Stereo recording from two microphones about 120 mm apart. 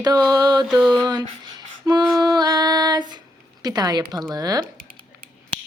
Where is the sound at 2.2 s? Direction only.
35° right (ahead or behind).